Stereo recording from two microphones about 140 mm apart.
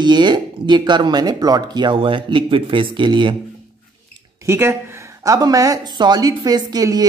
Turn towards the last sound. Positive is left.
turn(degrees=-25)  # may be behind; listen again after turning